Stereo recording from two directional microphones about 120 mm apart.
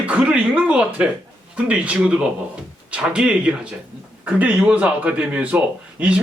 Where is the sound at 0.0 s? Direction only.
10° right (ahead or behind).